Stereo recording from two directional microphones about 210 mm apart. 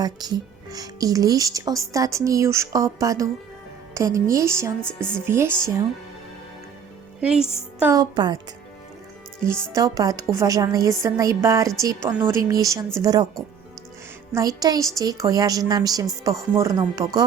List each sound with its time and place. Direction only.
0.0 s speech: 20° right (ahead or behind)
4.8 s speech: 5° left (ahead or behind)
5.2 s speech: 10° right (ahead or behind)
7.2 s a woman's voice: 5° right (ahead or behind); by 8.4 s 20° right (ahead or behind)
9.7 s speech: 15° right (ahead or behind)
14.3 s speech: 15° right (ahead or behind)